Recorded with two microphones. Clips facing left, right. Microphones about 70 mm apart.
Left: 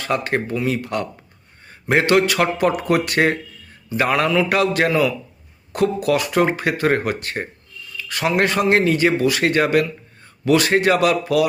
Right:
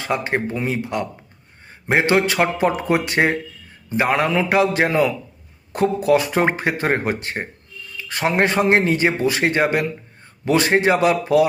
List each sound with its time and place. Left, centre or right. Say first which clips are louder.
0.0 s a man's voice: even; centre
4.9 s a man's voice: even; right